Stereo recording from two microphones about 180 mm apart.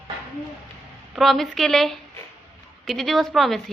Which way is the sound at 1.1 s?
Centre (ahead or behind).